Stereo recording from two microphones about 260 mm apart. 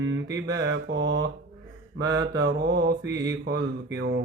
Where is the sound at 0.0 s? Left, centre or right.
Right.